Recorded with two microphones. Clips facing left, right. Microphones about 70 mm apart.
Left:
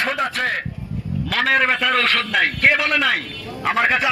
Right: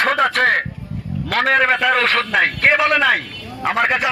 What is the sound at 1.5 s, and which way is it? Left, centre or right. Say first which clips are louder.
A man's voice: right 3 dB; centre.